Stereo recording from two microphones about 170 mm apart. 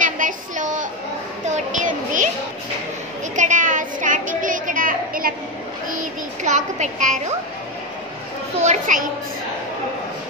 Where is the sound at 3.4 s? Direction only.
50° right (ahead or behind).